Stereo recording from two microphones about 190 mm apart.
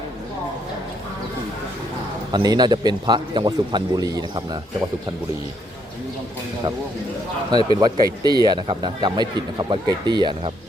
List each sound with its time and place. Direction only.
2.3 s speech: 20° right (ahead or behind)
7.8 s speech: 20° right (ahead or behind)